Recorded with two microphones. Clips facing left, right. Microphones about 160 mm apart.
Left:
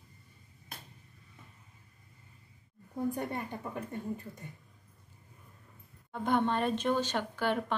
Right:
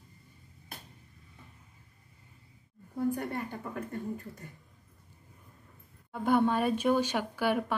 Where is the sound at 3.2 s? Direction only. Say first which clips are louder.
Right 1 dB; 20° left (ahead or behind).